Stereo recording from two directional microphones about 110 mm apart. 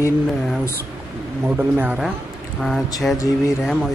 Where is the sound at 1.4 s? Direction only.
15° right (ahead or behind).